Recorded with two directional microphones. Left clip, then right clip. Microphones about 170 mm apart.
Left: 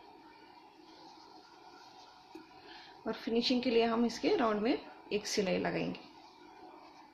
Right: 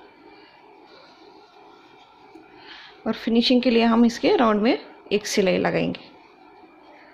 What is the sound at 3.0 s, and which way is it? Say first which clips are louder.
Speech: right 11 dB; 60° right (ahead or behind).